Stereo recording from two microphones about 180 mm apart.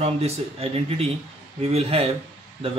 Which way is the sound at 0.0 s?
35° right (ahead or behind).